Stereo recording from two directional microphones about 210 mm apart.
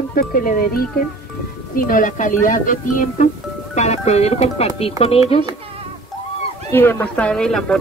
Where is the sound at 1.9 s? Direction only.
40° left (ahead or behind).